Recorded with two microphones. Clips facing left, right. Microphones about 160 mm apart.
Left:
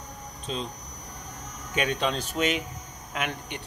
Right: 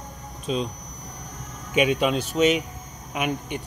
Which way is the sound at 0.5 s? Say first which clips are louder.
Right 7 dB; 10° right (ahead or behind).